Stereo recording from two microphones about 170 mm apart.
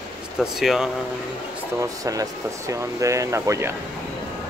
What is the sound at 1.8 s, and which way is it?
Speech, 20° right (ahead or behind).